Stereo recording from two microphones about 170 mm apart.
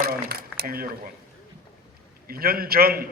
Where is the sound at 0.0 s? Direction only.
65° right (ahead or behind).